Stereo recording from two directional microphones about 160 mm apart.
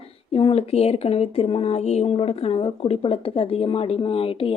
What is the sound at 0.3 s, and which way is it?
Speech, 35° left (ahead or behind).